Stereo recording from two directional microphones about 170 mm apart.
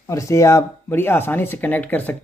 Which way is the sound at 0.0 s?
20° left (ahead or behind).